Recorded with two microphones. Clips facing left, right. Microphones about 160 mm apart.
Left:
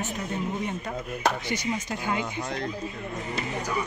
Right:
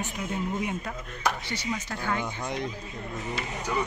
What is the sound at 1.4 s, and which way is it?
Speech, 15° left (ahead or behind).